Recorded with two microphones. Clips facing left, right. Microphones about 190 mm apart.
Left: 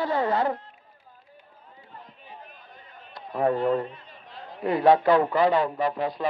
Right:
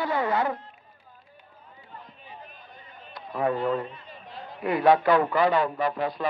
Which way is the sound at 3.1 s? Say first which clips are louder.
Left 2 dB; 35° left (ahead or behind).